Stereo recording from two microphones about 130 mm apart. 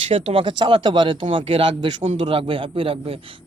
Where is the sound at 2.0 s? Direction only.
60° right (ahead or behind).